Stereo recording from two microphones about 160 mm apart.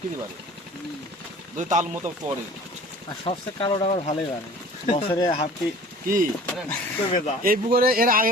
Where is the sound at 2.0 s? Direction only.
50° right (ahead or behind).